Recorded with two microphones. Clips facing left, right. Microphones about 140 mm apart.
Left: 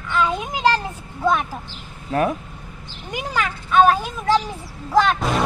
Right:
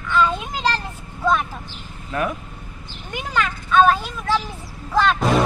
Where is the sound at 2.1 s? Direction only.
35° left (ahead or behind).